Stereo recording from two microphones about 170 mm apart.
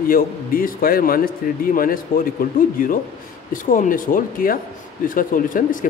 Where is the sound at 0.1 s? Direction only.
55° left (ahead or behind).